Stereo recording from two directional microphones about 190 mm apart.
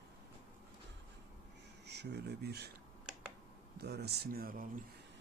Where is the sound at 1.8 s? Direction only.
60° right (ahead or behind).